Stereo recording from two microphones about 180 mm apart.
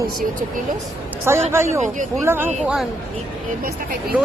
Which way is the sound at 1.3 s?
15° right (ahead or behind).